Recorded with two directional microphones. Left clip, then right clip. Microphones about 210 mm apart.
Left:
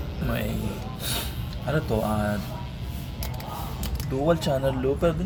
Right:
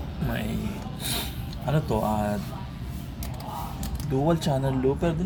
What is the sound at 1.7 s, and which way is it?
Speech, 5° right (ahead or behind).